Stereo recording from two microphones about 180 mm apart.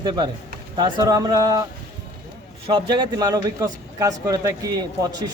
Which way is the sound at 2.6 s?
25° right (ahead or behind).